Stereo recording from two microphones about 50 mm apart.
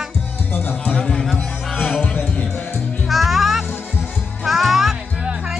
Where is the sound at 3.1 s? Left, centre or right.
Centre.